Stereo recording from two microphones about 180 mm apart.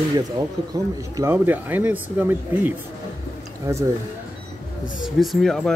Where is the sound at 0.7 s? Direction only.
15° right (ahead or behind).